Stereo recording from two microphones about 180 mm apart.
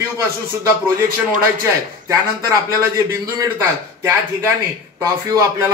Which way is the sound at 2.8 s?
15° right (ahead or behind).